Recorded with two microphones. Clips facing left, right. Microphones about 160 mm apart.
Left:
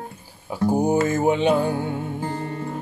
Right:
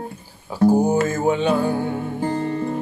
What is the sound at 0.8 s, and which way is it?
Music, 15° left (ahead or behind).